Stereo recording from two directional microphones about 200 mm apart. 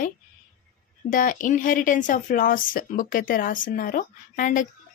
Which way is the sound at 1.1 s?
40° left (ahead or behind).